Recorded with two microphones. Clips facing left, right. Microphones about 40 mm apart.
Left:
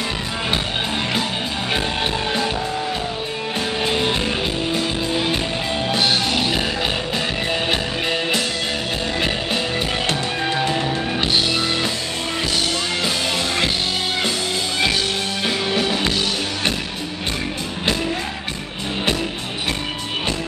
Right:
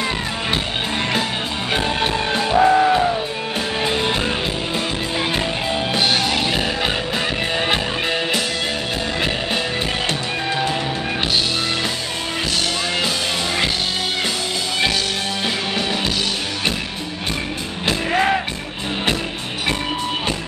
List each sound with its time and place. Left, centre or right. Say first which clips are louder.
1.7 s music: right 3 dB; centre
2.5 s music: right 10 dB; right
3.8 s music: even; centre
5.9 s music: even; centre
15.4 s music: left 3 dB; centre